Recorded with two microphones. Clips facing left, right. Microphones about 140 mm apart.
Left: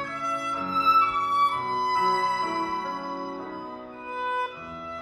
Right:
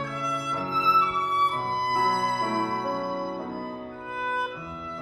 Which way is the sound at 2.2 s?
50° right (ahead or behind).